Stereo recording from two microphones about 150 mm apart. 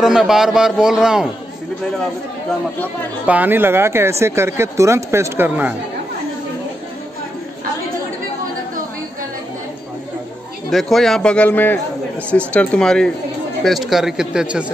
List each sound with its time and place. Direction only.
0.0 s a man's voice: 5° right (ahead or behind)
3.3 s speech: 10° right (ahead or behind)
10.7 s a man's voice: centre (ahead or behind)